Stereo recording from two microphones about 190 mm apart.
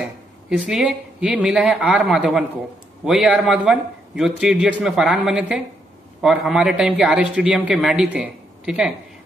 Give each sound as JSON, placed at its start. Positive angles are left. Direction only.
{"t": 0.0, "sound": "a man's voice", "side_deg": -5}